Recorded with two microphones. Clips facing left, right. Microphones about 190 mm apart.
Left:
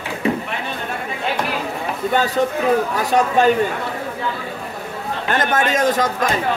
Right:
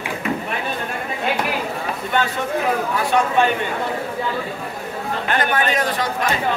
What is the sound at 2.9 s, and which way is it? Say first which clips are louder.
Speech: left 1 dB; 40° left (ahead or behind).